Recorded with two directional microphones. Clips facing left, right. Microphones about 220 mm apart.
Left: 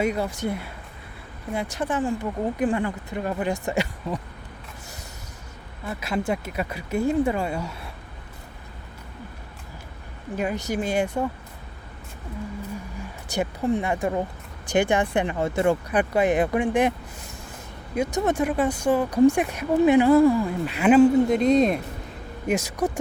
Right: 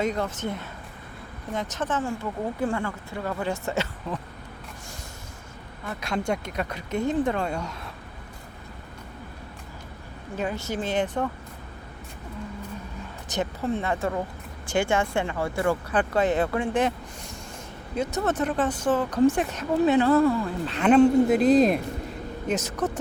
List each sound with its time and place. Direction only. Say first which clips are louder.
0.0 s speech: left 2 dB; 10° left (ahead or behind)
5.8 s speech: left 2 dB; 10° left (ahead or behind)
10.3 s speech: left 3 dB; 15° left (ahead or behind)
13.2 s speech: left 3 dB; 10° left (ahead or behind)
17.9 s speech: left 3 dB; 15° left (ahead or behind)
22.4 s speech: left 3 dB; 10° left (ahead or behind)